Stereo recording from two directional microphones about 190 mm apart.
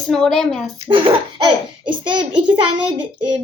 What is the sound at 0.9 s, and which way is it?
A child's voice, 25° right (ahead or behind).